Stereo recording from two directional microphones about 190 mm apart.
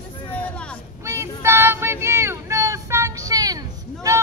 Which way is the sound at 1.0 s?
15° right (ahead or behind).